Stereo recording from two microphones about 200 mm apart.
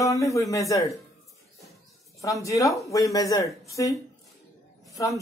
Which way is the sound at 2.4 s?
15° left (ahead or behind).